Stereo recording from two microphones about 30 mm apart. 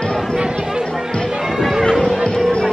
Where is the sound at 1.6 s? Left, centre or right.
Centre.